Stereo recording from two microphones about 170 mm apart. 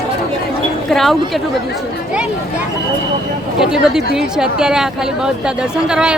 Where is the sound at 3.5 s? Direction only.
5° right (ahead or behind).